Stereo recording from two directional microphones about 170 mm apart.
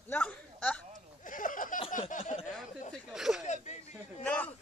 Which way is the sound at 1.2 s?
50° left (ahead or behind).